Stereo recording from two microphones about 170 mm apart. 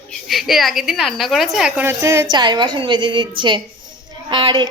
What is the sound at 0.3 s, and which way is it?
A woman's voice, centre (ahead or behind).